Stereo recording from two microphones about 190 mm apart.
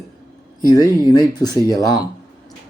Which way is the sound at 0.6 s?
20° left (ahead or behind).